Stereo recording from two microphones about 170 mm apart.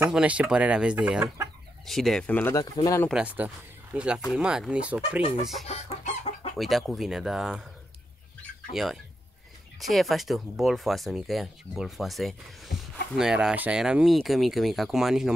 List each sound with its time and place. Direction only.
0.1 s speech: 5° right (ahead or behind); by 3.1 s 20° left (ahead or behind)
3.1 s speech: 5° right (ahead or behind)
5.7 s chicken: 35° left (ahead or behind)
6.6 s speech: centre (ahead or behind)
8.4 s chicken: centre (ahead or behind)
9.8 s speech: centre (ahead or behind)